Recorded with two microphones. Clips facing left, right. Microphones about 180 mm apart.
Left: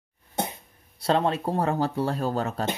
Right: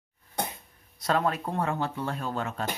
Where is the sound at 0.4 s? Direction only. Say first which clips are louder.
Left 3 dB; 25° left (ahead or behind).